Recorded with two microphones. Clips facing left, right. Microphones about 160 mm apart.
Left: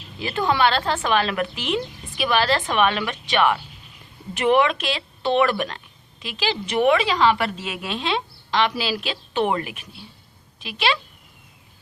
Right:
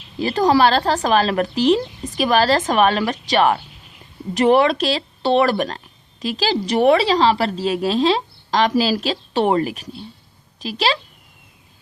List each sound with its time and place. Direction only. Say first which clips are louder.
0.2 s a woman's voice: right 6 dB; 40° right (ahead or behind)